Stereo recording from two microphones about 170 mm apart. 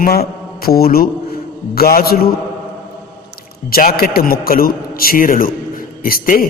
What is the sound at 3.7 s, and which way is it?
A man's voice, 60° left (ahead or behind).